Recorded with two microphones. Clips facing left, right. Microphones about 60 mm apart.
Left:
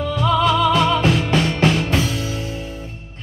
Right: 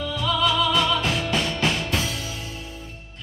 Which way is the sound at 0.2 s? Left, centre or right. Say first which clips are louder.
Left 6 dB; left.